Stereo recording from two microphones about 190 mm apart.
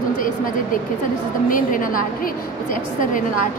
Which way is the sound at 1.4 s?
45° left (ahead or behind).